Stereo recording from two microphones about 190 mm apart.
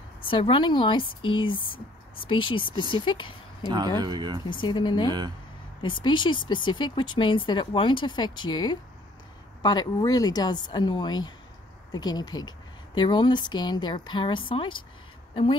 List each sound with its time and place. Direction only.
0.2 s speech: 25° left (ahead or behind)
2.8 s speech: 25° left (ahead or behind)
3.6 s speech: 25° right (ahead or behind)
4.5 s speech: 25° left (ahead or behind)